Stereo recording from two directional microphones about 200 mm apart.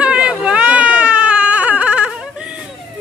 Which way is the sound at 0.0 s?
5° right (ahead or behind).